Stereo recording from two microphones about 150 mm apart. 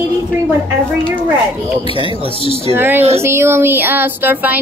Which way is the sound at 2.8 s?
15° right (ahead or behind).